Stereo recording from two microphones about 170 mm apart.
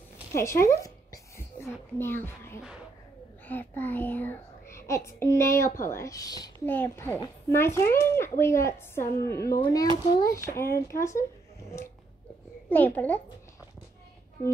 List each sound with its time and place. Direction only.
0.3 s a sound: 15° left (ahead or behind)
3.4 s a child's voice: 10° left (ahead or behind)
12.6 s a child's voice: 10° left (ahead or behind)